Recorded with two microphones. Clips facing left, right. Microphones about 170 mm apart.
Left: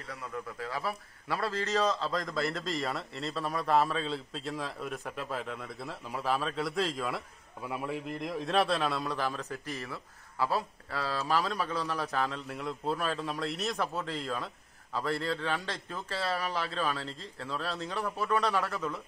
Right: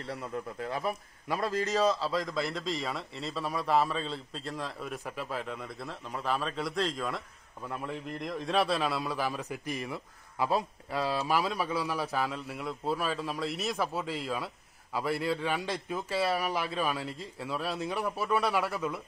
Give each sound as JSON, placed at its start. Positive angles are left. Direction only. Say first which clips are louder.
{"t": 0.0, "sound": "a man's voice", "louder": "right 3 dB", "side_deg": -30}